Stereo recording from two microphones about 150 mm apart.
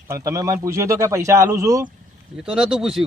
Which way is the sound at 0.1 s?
20° right (ahead or behind).